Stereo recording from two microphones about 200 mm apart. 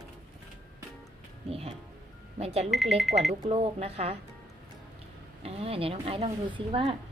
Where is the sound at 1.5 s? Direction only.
30° right (ahead or behind).